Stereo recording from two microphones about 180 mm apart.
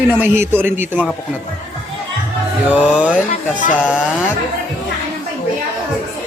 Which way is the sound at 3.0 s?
10° right (ahead or behind).